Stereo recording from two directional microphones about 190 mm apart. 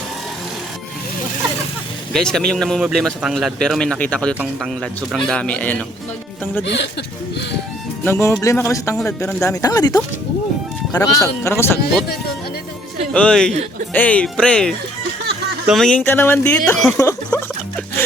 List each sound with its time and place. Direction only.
2.1 s a man's voice: centre (ahead or behind)
8.0 s speech: 10° left (ahead or behind)
13.1 s a man's voice: 5° left (ahead or behind)
13.5 s a man's voice: 35° right (ahead or behind)
13.9 s a man's voice: 5° left (ahead or behind)
17.0 s music: 15° left (ahead or behind)